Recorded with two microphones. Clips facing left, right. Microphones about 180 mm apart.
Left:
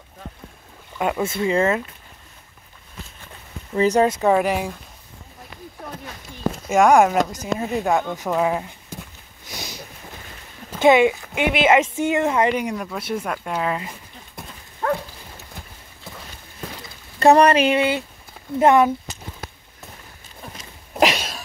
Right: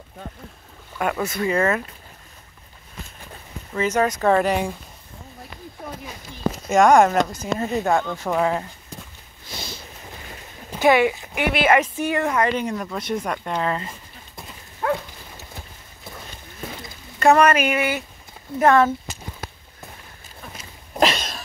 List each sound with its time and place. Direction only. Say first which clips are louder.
0.9 s speech: left 1 dB; 15° left (ahead or behind)
3.7 s speech: left 4 dB; 30° left (ahead or behind)
4.3 s speech: even; 5° left (ahead or behind)
5.8 s a sound: right 1 dB; 10° right (ahead or behind)
6.5 s speech: even; 10° left (ahead or behind)
9.5 s a sound: even; 15° left (ahead or behind)
10.8 s speech: left 2 dB; 20° left (ahead or behind)
17.2 s speech: left 2 dB; 35° left (ahead or behind)
20.9 s a sound: left 1 dB; 10° left (ahead or behind)